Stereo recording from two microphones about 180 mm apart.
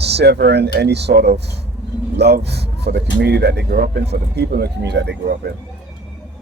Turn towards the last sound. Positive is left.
turn(degrees=-70)  # may be behind; listen again after turning